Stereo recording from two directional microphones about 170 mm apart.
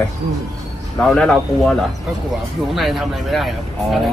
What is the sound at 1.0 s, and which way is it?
Speech, 5° left (ahead or behind).